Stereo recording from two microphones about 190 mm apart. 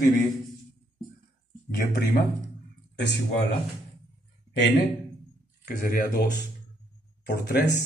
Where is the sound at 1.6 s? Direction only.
55° left (ahead or behind).